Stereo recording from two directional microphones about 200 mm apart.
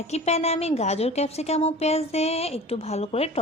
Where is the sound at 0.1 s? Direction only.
35° left (ahead or behind).